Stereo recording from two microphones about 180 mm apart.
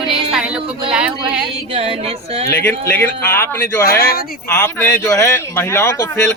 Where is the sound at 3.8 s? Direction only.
60° left (ahead or behind).